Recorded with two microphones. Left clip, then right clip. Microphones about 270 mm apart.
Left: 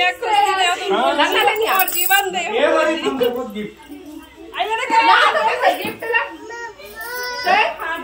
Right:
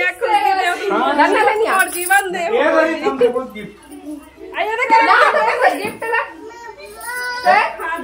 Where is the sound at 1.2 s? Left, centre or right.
Centre.